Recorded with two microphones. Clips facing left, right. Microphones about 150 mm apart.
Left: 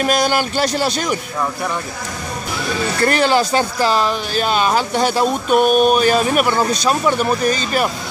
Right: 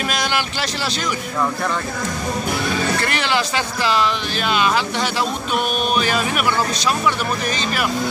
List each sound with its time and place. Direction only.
0.0 s speech: 40° left (ahead or behind)
3.0 s speech: 40° left (ahead or behind)